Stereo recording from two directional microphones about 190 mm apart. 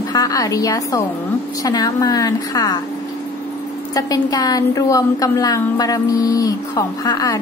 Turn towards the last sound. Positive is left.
turn(degrees=20)  # may be behind; listen again after turning